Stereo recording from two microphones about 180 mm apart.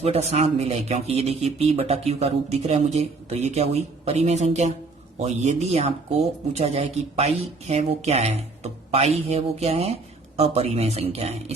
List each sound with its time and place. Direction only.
0.0 s speech: 35° right (ahead or behind)